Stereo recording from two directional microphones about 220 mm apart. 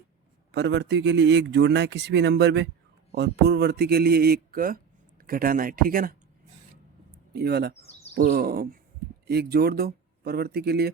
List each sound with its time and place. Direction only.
0.5 s a man's voice: 50° right (ahead or behind)
7.3 s a man's voice: 45° right (ahead or behind)
7.8 s a sound: 30° left (ahead or behind)
8.1 s a man's voice: 45° right (ahead or behind)